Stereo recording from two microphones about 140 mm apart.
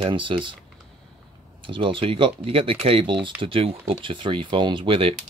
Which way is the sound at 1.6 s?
35° right (ahead or behind).